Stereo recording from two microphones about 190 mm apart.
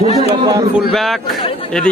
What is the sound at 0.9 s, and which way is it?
Speech, centre (ahead or behind).